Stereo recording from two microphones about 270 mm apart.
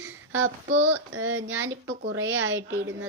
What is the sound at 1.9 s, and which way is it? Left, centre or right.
Speech, right.